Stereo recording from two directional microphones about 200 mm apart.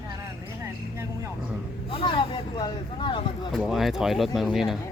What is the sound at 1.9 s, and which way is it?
Speech, 25° left (ahead or behind).